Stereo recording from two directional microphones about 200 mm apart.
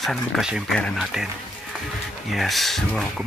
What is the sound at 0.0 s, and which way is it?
Speech, centre (ahead or behind).